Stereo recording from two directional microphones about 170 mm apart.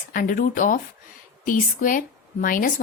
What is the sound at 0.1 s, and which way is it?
A woman's voice, 55° left (ahead or behind).